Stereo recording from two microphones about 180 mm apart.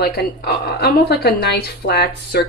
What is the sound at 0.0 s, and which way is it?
A woman's voice, 60° left (ahead or behind).